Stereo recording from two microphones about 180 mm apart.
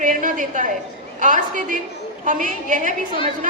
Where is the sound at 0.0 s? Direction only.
45° right (ahead or behind).